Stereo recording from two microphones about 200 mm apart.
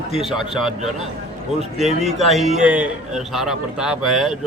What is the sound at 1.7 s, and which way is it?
A man's voice, centre (ahead or behind).